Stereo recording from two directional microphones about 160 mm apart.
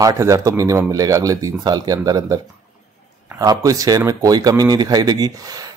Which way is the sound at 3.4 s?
25° right (ahead or behind).